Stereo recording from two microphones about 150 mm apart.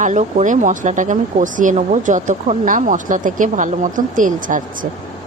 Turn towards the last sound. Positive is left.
turn(degrees=-60)  # may be behind; listen again after turning